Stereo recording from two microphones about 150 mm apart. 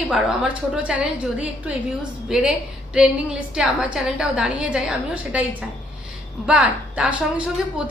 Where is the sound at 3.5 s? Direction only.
5° right (ahead or behind).